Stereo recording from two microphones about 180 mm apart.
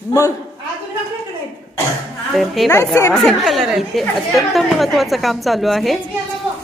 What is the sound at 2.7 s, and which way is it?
Speech, 15° left (ahead or behind).